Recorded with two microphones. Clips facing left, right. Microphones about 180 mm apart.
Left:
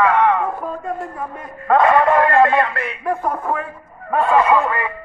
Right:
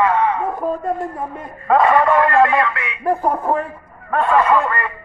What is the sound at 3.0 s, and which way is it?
Speech, 35° right (ahead or behind).